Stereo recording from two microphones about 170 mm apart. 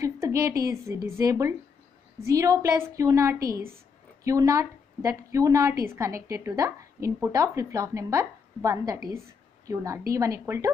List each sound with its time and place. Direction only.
0.0 s a woman's voice: 20° right (ahead or behind)